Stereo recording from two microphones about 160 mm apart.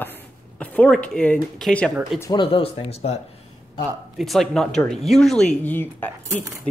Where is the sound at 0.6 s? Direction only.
10° left (ahead or behind).